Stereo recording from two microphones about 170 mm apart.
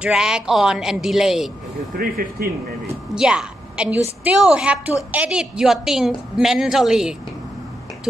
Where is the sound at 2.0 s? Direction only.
60° right (ahead or behind).